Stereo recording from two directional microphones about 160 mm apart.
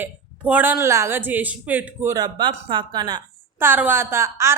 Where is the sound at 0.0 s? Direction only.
10° right (ahead or behind).